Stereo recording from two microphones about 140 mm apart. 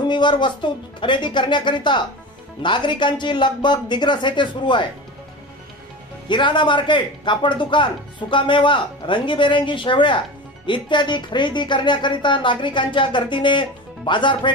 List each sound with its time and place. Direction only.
0.0 s speech: 35° left (ahead or behind)
6.2 s speech: 35° left (ahead or behind)